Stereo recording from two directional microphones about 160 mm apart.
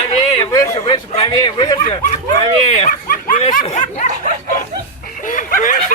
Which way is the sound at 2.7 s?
50° left (ahead or behind).